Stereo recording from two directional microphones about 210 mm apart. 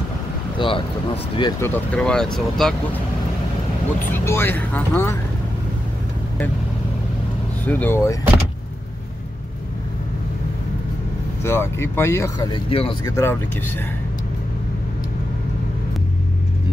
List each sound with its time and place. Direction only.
0.6 s speech: 25° left (ahead or behind)
1.6 s speech: 5° left (ahead or behind)
4.1 s speech: 10° left (ahead or behind)
7.6 s speech: 10° left (ahead or behind)
11.4 s speech: 10° left (ahead or behind)
13.1 s speech: 10° left (ahead or behind)